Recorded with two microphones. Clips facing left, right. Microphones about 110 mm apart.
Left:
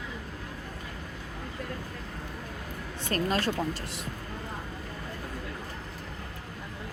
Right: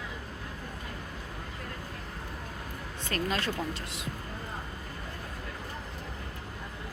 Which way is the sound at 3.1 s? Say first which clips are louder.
Left 3 dB; 40° left (ahead or behind).